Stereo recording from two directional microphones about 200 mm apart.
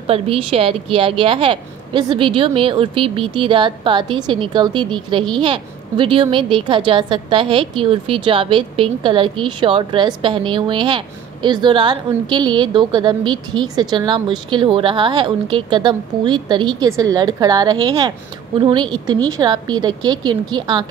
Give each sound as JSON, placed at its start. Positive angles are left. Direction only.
{"t": 0.0, "sound": "a woman's voice", "side_deg": -30}